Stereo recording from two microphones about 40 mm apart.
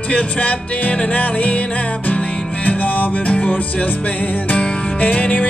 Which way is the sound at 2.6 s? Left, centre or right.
Left.